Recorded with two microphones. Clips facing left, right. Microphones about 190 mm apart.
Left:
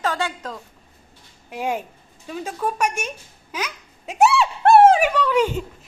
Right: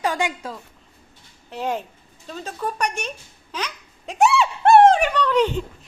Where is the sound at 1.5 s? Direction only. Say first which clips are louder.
Left 1 dB; 10° left (ahead or behind).